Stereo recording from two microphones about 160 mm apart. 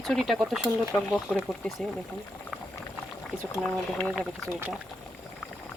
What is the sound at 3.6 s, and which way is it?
Speech, 5° left (ahead or behind).